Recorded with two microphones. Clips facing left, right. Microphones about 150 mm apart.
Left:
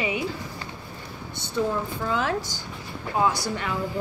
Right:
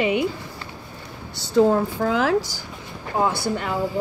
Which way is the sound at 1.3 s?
90° right.